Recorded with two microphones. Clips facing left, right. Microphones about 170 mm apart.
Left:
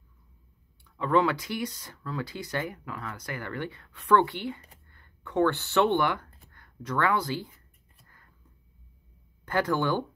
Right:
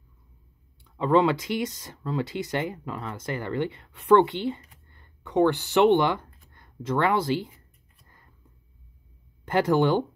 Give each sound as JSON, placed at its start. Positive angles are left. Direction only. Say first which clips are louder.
{"t": 0.8, "sound": "speech", "louder": "right 4 dB", "side_deg": -25}
{"t": 8.0, "sound": "a sound", "louder": "right 2 dB", "side_deg": -20}
{"t": 9.4, "sound": "speech", "louder": "right 5 dB", "side_deg": -20}